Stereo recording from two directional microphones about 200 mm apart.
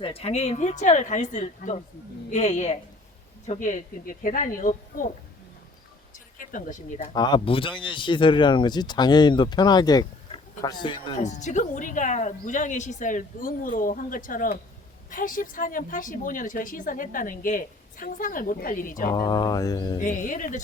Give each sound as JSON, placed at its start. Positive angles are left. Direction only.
{"t": 0.0, "sound": "a woman's voice", "side_deg": 30}
{"t": 6.4, "sound": "a woman's voice", "side_deg": 40}
{"t": 7.1, "sound": "speech", "side_deg": 25}
{"t": 11.2, "sound": "a woman's voice", "side_deg": 35}
{"t": 19.1, "sound": "speech", "side_deg": 20}
{"t": 20.0, "sound": "a woman's voice", "side_deg": 40}